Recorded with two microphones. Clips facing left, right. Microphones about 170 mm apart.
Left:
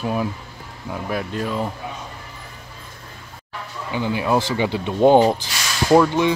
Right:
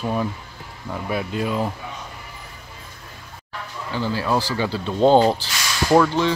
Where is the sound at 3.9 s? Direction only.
15° left (ahead or behind).